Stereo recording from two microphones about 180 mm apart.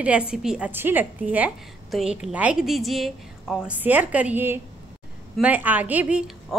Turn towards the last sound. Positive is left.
turn(degrees=-5)  # may be behind; listen again after turning